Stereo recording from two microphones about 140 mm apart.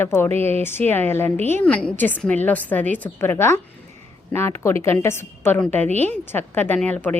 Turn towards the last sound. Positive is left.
turn(degrees=10)  # may be behind; listen again after turning